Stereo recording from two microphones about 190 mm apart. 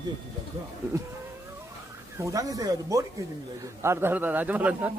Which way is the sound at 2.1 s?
15° right (ahead or behind).